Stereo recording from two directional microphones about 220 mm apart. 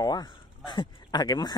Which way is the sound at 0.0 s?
20° left (ahead or behind).